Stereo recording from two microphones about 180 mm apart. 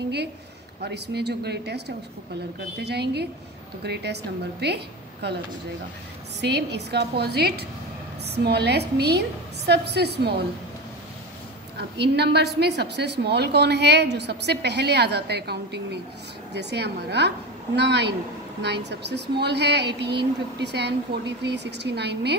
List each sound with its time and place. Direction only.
0.8 s a woman's voice: 65° right (ahead or behind)
6.4 s a woman's voice: 65° right (ahead or behind)
12.0 s a woman's voice: 65° right (ahead or behind)